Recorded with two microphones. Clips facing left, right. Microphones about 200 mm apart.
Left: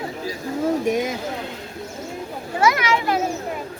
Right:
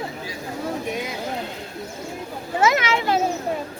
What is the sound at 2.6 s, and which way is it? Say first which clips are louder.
Speech: left 1 dB; 25° right (ahead or behind).